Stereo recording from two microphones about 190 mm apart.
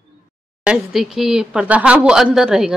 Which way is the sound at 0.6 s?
5° right (ahead or behind).